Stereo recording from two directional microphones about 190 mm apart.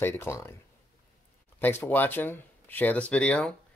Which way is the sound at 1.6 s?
10° left (ahead or behind).